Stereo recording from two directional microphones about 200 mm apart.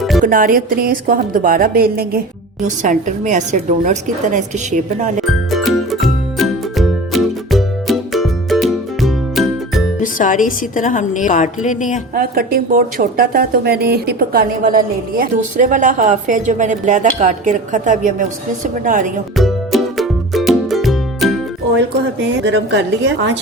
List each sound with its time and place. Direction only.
0.2 s a woman's voice: 45° right (ahead or behind)
5.5 s music: centre (ahead or behind)
10.0 s a woman's voice: 40° left (ahead or behind)
12.1 s speech: 45° right (ahead or behind)
19.4 s music: centre (ahead or behind)
22.4 s a woman's voice: 65° right (ahead or behind)